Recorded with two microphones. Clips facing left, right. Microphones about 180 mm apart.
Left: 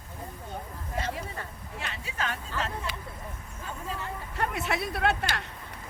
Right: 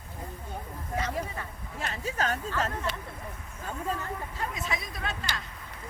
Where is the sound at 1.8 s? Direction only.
40° right (ahead or behind).